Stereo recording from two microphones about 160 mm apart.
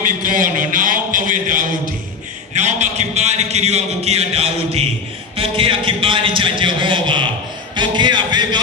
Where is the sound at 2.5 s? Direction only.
45° right (ahead or behind).